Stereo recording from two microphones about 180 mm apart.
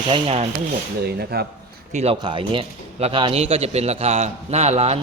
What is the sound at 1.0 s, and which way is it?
Speech, 60° right (ahead or behind).